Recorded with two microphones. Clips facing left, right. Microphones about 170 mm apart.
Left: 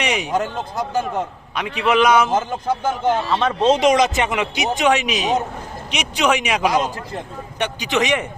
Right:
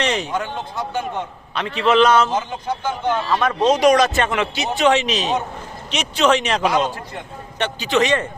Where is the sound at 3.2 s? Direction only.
25° left (ahead or behind).